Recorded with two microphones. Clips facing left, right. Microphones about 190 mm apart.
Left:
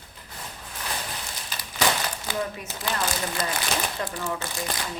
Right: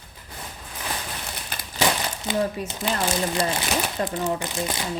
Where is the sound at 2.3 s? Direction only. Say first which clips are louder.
Right 8 dB; 20° right (ahead or behind).